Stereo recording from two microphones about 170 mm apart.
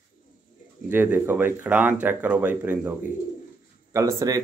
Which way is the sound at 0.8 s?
10° right (ahead or behind).